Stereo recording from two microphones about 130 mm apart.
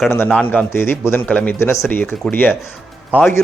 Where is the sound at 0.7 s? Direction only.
15° left (ahead or behind).